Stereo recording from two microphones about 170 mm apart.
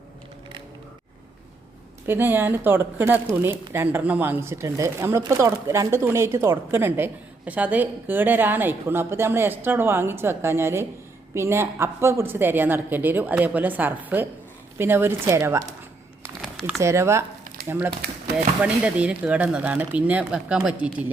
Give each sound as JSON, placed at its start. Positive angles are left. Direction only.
{"t": 2.0, "sound": "speech", "side_deg": -10}
{"t": 16.4, "sound": "a sound", "side_deg": 0}
{"t": 16.8, "sound": "speech", "side_deg": -15}